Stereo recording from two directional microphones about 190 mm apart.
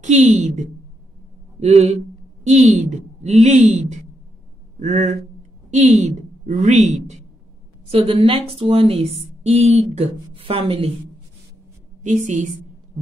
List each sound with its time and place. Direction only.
0.0 s a woman's voice: 40° right (ahead or behind)
8.3 s speech: 30° right (ahead or behind)
12.0 s a woman's voice: 40° right (ahead or behind)